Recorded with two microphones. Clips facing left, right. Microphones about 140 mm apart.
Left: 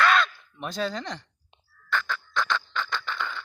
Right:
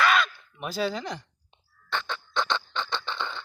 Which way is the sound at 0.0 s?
5° right (ahead or behind).